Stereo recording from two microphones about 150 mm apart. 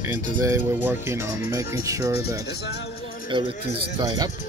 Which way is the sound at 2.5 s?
90° left.